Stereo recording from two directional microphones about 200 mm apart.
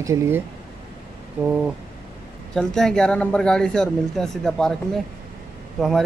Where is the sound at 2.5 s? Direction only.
5° left (ahead or behind).